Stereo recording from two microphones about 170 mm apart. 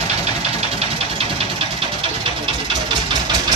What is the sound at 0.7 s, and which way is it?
Engine, 35° right (ahead or behind).